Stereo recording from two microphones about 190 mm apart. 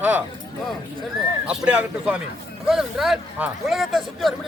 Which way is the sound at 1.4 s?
5° right (ahead or behind).